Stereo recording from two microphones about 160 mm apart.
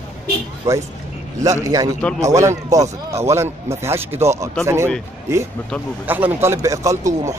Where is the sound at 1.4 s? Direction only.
20° right (ahead or behind).